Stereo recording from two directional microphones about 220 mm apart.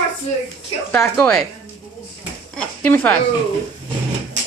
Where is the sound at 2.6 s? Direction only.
5° left (ahead or behind).